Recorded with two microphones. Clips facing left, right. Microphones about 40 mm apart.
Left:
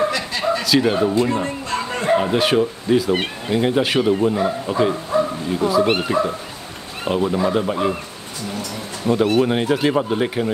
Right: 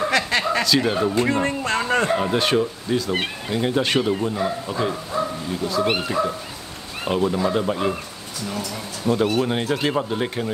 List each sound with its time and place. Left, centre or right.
0.1 s chuckle: right
0.7 s speech: centre
1.4 s a sound: right
2.0 s speech: centre
9.0 s speech: centre